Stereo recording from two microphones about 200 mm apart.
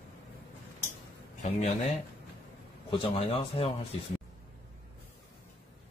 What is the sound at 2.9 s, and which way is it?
Speech, 30° left (ahead or behind).